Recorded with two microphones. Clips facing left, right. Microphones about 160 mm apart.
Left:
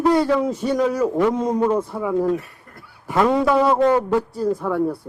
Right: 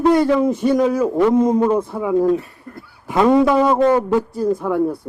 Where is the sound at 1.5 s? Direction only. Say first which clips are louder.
Right 3 dB; centre (ahead or behind).